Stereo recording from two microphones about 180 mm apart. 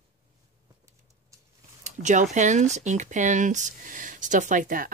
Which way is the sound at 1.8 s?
45° right (ahead or behind).